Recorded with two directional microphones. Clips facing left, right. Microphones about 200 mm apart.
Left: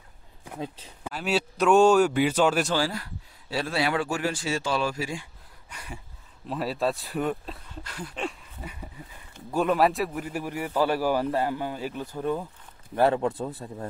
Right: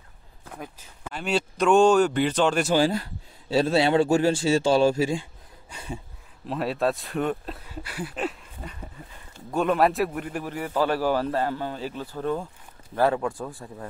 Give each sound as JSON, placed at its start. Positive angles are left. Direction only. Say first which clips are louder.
{"t": 0.5, "sound": "a sound", "louder": "left 2 dB", "side_deg": 15}
{"t": 1.0, "sound": "a man's voice", "louder": "right 1 dB", "side_deg": 5}
{"t": 2.7, "sound": "a man's voice", "louder": "right 6 dB", "side_deg": -20}
{"t": 6.4, "sound": "a man's voice", "louder": "right 2 dB", "side_deg": 0}
{"t": 12.9, "sound": "speech", "louder": "left 1 dB", "side_deg": 25}